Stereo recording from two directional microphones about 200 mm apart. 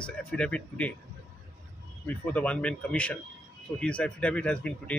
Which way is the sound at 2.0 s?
5° left (ahead or behind).